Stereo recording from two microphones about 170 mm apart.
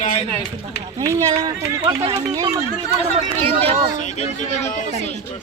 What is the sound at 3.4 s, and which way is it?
Speech, 35° right (ahead or behind).